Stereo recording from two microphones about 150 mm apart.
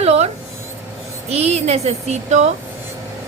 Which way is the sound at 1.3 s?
45° right (ahead or behind).